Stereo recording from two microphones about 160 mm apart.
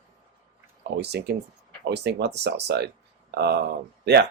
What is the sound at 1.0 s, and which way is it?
Speech, 90° right.